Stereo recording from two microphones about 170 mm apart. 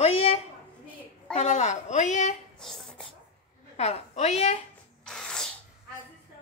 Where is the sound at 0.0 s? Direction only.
40° left (ahead or behind).